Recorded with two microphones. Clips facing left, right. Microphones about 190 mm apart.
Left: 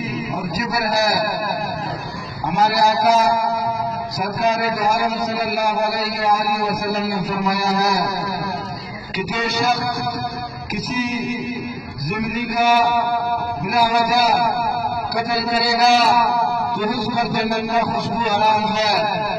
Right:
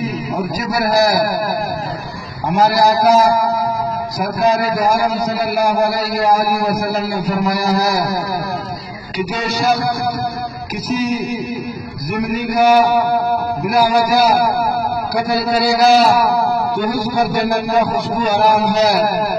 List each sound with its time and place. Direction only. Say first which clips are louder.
0.6 s a man's voice: right 5 dB; 40° right (ahead or behind)
2.6 s a man's voice: right 4 dB; 40° right (ahead or behind)
11.0 s a man's voice: right 3 dB; 35° right (ahead or behind)